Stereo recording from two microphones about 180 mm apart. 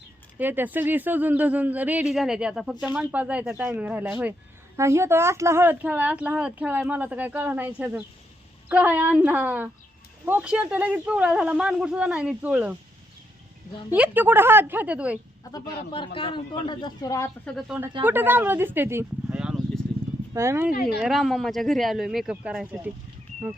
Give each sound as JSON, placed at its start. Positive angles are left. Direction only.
{"t": 0.3, "sound": "speech", "side_deg": -10}
{"t": 8.7, "sound": "speech", "side_deg": -10}
{"t": 13.9, "sound": "speech", "side_deg": -10}
{"t": 15.5, "sound": "a woman's voice", "side_deg": 25}
{"t": 17.6, "sound": "speech", "side_deg": -5}
{"t": 20.3, "sound": "speech", "side_deg": -15}
{"t": 21.0, "sound": "speech", "side_deg": 0}